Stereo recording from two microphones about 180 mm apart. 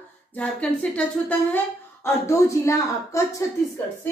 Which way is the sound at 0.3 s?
5° left (ahead or behind).